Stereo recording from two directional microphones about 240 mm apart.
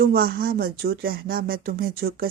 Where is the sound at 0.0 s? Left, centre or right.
Right.